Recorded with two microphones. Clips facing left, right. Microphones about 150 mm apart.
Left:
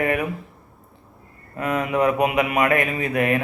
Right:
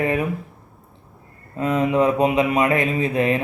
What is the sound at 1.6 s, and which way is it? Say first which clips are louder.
Speech: right 3 dB; 25° right (ahead or behind).